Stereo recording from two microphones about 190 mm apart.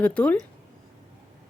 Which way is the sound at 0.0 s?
5° left (ahead or behind).